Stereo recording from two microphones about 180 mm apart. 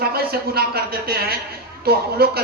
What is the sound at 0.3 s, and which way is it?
Speech, 60° right (ahead or behind).